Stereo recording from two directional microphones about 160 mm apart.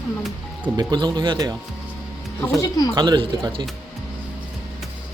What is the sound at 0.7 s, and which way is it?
Speech, 25° right (ahead or behind).